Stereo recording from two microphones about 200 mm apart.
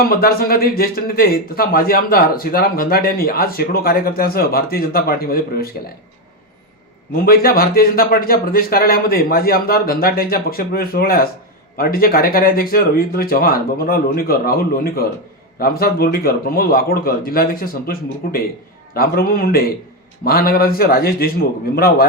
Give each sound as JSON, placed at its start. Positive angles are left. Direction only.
{"t": 0.1, "sound": "speech", "side_deg": 50}
{"t": 7.1, "sound": "speech", "side_deg": 50}